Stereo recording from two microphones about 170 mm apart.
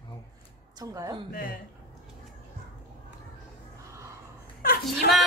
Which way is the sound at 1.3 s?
60° left (ahead or behind).